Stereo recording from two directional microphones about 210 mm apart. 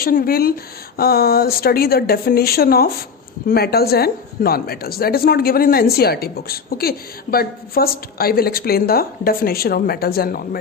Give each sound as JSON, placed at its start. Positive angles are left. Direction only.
{"t": 0.0, "sound": "speech", "side_deg": 45}